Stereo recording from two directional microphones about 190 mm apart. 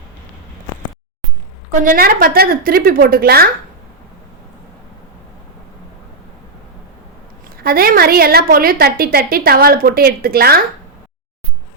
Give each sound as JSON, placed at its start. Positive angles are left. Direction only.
{"t": 1.7, "sound": "a woman's voice", "side_deg": -45}
{"t": 7.4, "sound": "a woman's voice", "side_deg": -50}